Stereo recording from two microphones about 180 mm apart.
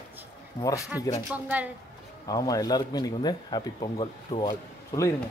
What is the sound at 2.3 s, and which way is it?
Speech, 20° left (ahead or behind).